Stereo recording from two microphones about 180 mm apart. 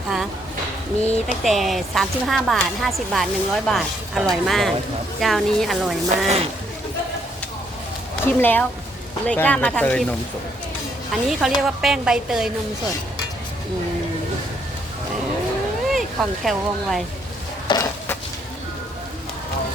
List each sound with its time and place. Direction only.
1.0 s speech: centre (ahead or behind)
6.2 s speech: 35° right (ahead or behind)
8.2 s speech: 10° left (ahead or behind)
15.9 s speech: centre (ahead or behind)